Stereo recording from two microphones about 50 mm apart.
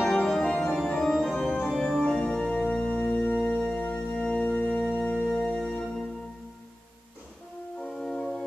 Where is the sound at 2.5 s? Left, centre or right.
Left.